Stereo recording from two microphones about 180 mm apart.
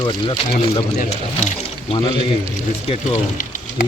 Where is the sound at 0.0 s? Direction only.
25° left (ahead or behind).